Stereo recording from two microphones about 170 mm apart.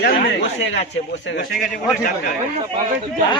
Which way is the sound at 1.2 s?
90° left.